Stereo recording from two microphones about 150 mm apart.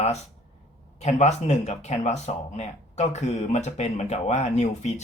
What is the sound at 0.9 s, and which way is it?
Speech, 50° left (ahead or behind).